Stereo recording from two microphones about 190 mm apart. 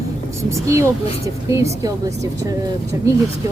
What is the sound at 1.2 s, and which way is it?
Speech, 15° right (ahead or behind).